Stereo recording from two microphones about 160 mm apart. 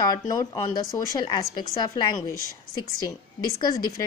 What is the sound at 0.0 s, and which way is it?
A woman's voice, 25° left (ahead or behind).